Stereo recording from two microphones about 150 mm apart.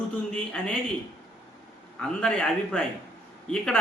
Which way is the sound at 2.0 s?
5° left (ahead or behind).